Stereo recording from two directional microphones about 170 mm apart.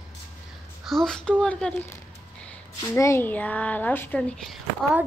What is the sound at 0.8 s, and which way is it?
Speech, centre (ahead or behind).